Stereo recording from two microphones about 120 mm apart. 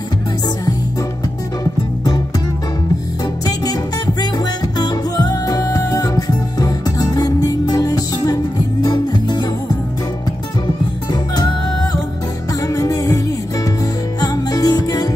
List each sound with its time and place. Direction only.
4.7 s music: 35° left (ahead or behind)
12.6 s music: 30° left (ahead or behind)
14.2 s music: 30° left (ahead or behind)